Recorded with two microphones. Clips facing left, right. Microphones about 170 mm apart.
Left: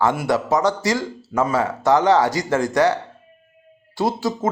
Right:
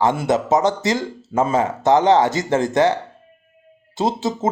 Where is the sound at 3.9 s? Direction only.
20° right (ahead or behind).